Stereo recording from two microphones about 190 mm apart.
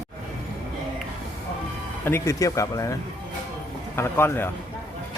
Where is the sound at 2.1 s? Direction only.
15° left (ahead or behind).